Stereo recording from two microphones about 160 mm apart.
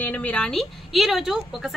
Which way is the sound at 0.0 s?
10° left (ahead or behind).